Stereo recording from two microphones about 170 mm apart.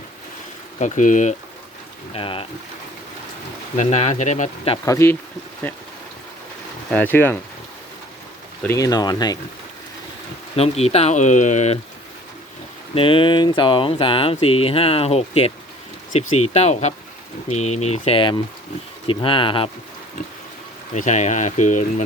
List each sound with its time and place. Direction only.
0.8 s speech: 45° left (ahead or behind)
2.1 s speech: 35° left (ahead or behind)
3.8 s speech: 40° left (ahead or behind)
4.9 s speech: 15° left (ahead or behind)
6.9 s speech: 10° left (ahead or behind)
8.6 s speech: 20° left (ahead or behind)
10.6 s speech: 40° left (ahead or behind)
12.9 s speech: 30° left (ahead or behind)
20.9 s speech: 45° left (ahead or behind)